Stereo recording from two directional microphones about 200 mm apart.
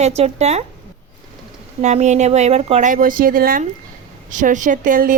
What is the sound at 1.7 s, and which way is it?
A woman's voice, 35° right (ahead or behind).